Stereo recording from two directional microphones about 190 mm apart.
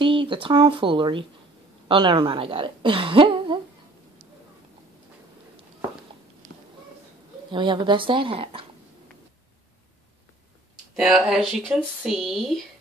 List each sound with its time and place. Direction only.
0.0 s a woman's voice: 25° right (ahead or behind)
7.5 s a woman's voice: 25° right (ahead or behind)
11.0 s speech: centre (ahead or behind)